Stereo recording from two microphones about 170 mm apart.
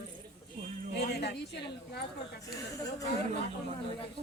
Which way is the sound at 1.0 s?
80° left.